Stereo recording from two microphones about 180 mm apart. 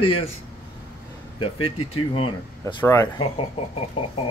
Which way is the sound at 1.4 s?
30° left (ahead or behind).